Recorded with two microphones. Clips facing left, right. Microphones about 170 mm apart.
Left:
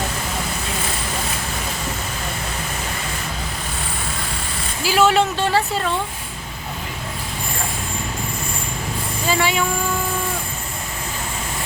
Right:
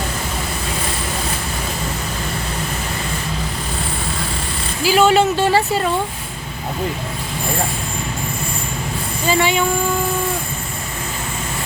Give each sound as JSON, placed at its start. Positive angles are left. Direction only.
{"t": 4.8, "sound": "speech", "side_deg": 0}
{"t": 9.2, "sound": "speech", "side_deg": 0}